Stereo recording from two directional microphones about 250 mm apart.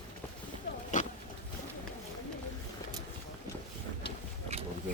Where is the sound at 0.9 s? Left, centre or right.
Left.